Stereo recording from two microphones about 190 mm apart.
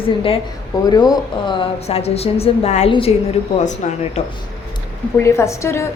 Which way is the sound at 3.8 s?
40° left (ahead or behind).